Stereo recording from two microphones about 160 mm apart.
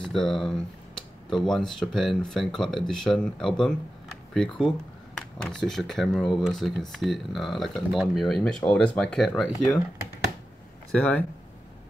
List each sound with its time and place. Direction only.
0.0 s speech: centre (ahead or behind)
10.9 s speech: 5° left (ahead or behind)